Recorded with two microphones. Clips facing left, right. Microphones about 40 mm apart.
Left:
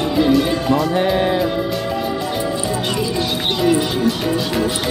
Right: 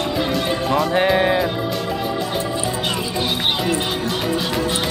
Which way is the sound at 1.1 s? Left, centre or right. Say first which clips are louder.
Even; centre.